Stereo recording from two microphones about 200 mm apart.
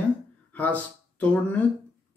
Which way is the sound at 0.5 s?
5° left (ahead or behind).